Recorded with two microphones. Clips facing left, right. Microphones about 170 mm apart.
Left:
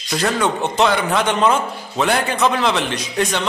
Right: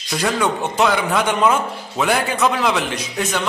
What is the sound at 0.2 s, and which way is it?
A man's voice, 10° right (ahead or behind).